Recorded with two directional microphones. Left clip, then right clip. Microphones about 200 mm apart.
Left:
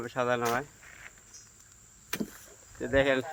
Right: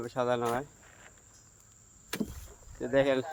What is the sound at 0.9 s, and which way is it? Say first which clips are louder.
Cricket: left 6 dB; 25° right (ahead or behind).